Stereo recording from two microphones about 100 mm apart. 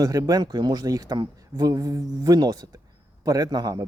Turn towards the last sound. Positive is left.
turn(degrees=-40)  # may be behind; listen again after turning